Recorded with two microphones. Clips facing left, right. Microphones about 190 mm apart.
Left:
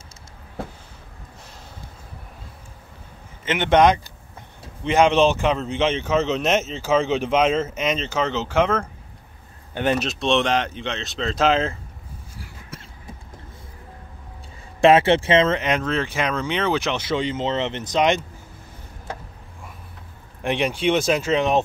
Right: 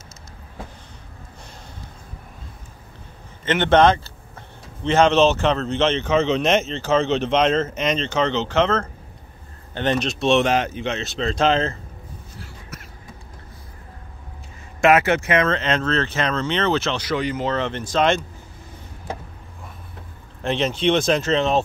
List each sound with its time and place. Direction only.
3.4 s speech: 10° left (ahead or behind)
12.7 s a sound: 30° left (ahead or behind)
14.8 s speech: 30° left (ahead or behind)
20.4 s speech: 15° left (ahead or behind)